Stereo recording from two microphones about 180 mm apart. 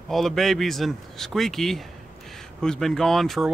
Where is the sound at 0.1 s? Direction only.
Centre (ahead or behind).